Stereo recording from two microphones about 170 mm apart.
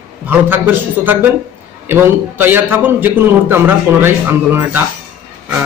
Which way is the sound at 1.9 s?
10° right (ahead or behind).